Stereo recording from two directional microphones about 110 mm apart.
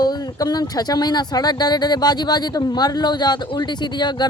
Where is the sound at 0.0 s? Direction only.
35° left (ahead or behind).